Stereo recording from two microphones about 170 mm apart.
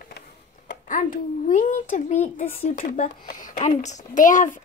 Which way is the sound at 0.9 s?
50° left (ahead or behind).